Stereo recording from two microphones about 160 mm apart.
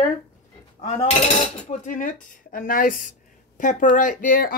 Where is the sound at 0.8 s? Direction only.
45° left (ahead or behind); by 4.5 s 60° left (ahead or behind).